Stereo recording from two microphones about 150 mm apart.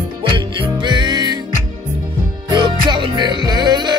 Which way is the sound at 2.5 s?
30° right (ahead or behind).